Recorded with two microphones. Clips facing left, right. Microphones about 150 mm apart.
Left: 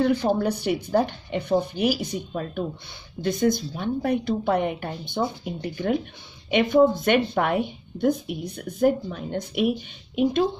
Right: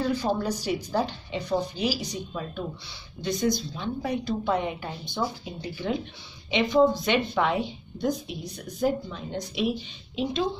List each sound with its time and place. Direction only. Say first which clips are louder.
0.0 s a woman's voice: left 5 dB; 60° left (ahead or behind)
6.5 s a woman's voice: left 3 dB; 55° left (ahead or behind)